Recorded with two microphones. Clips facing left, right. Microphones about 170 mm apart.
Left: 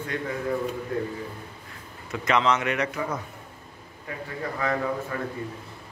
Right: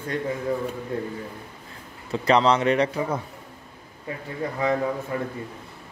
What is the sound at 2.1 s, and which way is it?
A man's voice, 35° right (ahead or behind).